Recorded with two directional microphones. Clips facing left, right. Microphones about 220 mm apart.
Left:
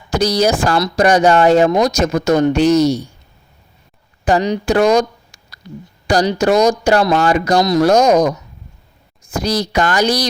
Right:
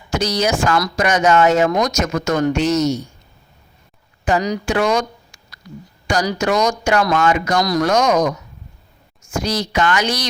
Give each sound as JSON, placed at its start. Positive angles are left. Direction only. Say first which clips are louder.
{"t": 0.1, "sound": "speech", "louder": "left 4 dB", "side_deg": 35}
{"t": 4.3, "sound": "speech", "louder": "left 4 dB", "side_deg": 30}